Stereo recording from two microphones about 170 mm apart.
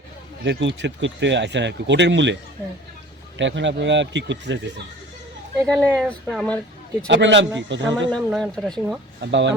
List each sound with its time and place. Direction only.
0.4 s speech: 90° right
6.0 s speech: centre (ahead or behind)
7.1 s speech: 90° right
8.1 s speech: 5° left (ahead or behind)
9.2 s speech: 90° right